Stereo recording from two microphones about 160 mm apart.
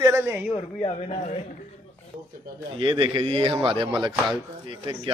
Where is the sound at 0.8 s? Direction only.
40° left (ahead or behind).